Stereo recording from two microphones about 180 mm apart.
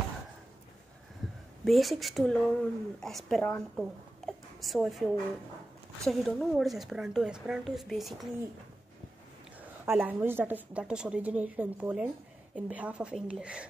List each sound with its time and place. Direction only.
1.6 s a woman's voice: centre (ahead or behind)
4.3 s a sound: centre (ahead or behind)
6.0 s a woman's voice: centre (ahead or behind)
9.6 s a woman's voice: 10° right (ahead or behind)